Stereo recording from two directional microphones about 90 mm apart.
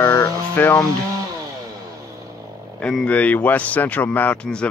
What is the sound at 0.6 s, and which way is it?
Speech, 20° left (ahead or behind).